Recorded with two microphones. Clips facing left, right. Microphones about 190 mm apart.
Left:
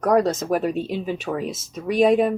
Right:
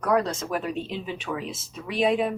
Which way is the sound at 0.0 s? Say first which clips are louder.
Left 5 dB; 45° left (ahead or behind).